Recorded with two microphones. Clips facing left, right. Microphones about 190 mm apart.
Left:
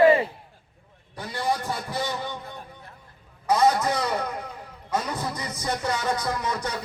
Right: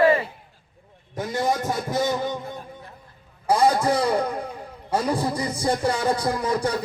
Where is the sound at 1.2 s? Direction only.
45° right (ahead or behind).